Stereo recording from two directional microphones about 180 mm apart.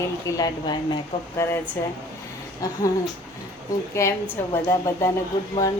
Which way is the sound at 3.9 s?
15° left (ahead or behind).